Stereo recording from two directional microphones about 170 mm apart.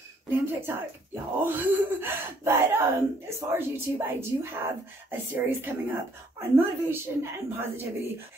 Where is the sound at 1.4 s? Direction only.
10° right (ahead or behind).